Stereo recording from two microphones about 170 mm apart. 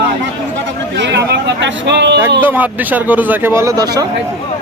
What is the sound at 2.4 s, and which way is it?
Speech, 10° right (ahead or behind).